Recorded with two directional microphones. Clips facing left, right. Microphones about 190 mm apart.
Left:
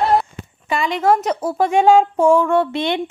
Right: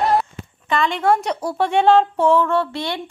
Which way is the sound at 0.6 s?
5° left (ahead or behind).